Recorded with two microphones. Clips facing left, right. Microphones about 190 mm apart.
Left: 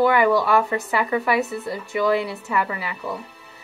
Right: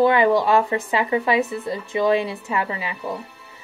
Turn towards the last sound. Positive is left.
turn(degrees=-20)  # may be behind; listen again after turning